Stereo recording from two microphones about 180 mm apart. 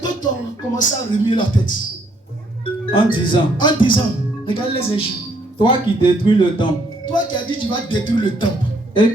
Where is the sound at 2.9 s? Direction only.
30° left (ahead or behind).